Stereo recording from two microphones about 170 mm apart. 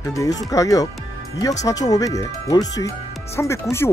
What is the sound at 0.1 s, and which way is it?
Speech, 20° left (ahead or behind).